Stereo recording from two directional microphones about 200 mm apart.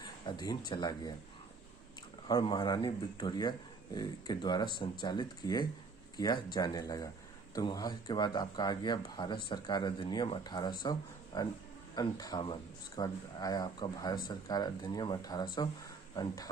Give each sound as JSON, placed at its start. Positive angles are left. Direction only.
{"t": 0.0, "sound": "speech", "side_deg": 20}
{"t": 2.2, "sound": "speech", "side_deg": 20}